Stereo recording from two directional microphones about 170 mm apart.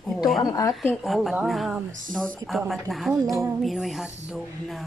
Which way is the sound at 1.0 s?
Centre (ahead or behind).